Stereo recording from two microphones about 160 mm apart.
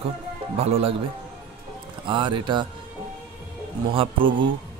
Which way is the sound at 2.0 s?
30° right (ahead or behind).